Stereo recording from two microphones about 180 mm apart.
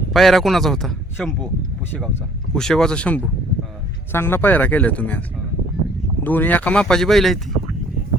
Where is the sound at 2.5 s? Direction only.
5° left (ahead or behind).